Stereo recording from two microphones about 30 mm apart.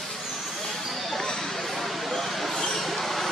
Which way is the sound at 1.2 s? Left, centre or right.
Left.